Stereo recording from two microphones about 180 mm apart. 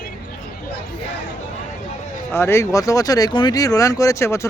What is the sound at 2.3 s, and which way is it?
Speech, 15° left (ahead or behind).